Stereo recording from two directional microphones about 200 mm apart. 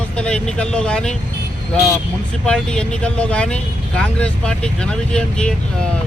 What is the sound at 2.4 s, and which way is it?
Speech, 5° left (ahead or behind).